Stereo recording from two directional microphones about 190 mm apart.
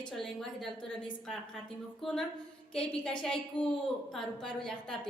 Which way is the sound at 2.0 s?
Centre (ahead or behind).